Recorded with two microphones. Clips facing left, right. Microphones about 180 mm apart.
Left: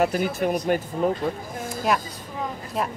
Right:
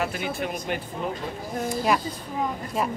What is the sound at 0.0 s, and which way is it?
A man's voice, 45° left (ahead or behind).